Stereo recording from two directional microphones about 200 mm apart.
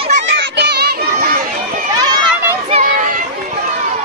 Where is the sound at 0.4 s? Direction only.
55° right (ahead or behind).